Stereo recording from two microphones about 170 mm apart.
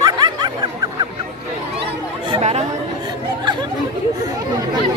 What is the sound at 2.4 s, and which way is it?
Chatter, 40° right (ahead or behind).